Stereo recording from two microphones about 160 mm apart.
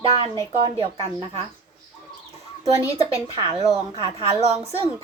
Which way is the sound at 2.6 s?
35° right (ahead or behind).